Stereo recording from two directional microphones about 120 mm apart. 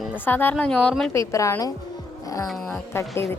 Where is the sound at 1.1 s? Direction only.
25° left (ahead or behind).